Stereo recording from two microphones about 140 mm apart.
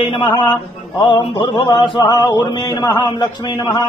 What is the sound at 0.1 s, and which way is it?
A man's voice, 35° left (ahead or behind).